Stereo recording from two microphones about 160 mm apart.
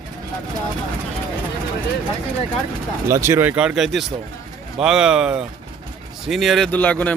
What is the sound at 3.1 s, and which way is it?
Speech, 15° right (ahead or behind).